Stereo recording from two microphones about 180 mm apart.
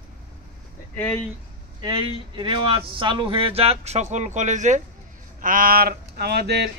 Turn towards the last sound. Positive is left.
turn(degrees=-65)  # may be behind; listen again after turning